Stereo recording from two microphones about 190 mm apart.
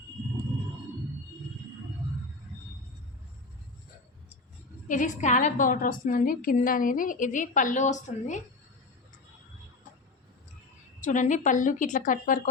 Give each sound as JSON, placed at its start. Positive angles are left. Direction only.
{"t": 4.9, "sound": "a woman's voice", "side_deg": 40}
{"t": 11.0, "sound": "a woman's voice", "side_deg": 40}